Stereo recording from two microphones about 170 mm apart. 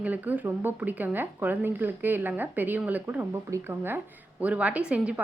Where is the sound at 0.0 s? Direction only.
10° right (ahead or behind).